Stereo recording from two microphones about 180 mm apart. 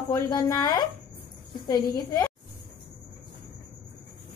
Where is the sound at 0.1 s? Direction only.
20° left (ahead or behind).